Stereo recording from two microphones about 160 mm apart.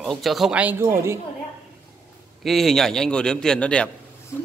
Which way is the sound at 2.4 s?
Centre (ahead or behind).